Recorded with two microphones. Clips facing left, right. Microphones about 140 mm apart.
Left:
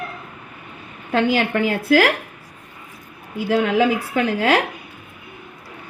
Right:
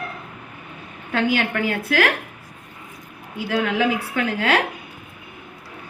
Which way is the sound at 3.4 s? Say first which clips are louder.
Left 4 dB; 25° left (ahead or behind).